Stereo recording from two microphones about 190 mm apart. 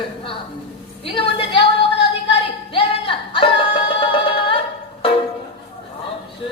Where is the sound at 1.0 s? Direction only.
30° left (ahead or behind).